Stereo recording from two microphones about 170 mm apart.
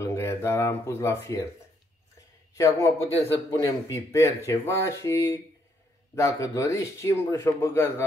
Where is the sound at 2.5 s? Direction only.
15° left (ahead or behind).